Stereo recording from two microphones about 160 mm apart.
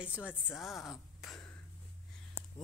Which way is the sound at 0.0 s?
10° right (ahead or behind).